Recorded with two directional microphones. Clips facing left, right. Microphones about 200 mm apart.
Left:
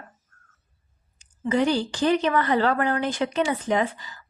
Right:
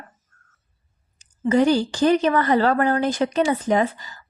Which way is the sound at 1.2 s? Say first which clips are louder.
Right 5 dB; 45° right (ahead or behind).